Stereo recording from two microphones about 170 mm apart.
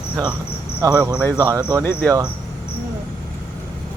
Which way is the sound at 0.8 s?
20° right (ahead or behind).